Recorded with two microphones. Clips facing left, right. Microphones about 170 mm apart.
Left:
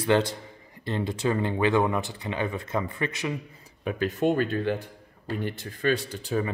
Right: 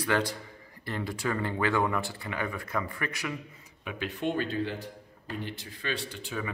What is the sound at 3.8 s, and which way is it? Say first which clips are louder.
Speech: left 7 dB; 40° left (ahead or behind).